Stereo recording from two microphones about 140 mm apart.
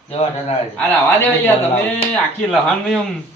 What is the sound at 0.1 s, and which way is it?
Speech, 45° left (ahead or behind).